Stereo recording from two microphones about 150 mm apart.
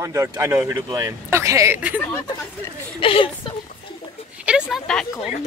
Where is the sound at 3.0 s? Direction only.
35° left (ahead or behind).